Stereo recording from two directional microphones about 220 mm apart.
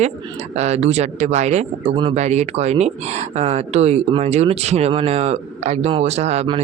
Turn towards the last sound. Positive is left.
turn(degrees=-30)  # may be behind; listen again after turning